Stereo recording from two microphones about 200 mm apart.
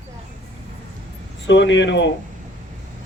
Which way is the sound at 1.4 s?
65° left (ahead or behind).